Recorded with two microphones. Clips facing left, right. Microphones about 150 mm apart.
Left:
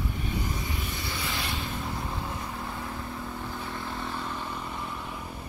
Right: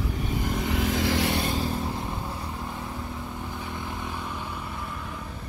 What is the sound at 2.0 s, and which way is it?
Vehicle, 15° right (ahead or behind).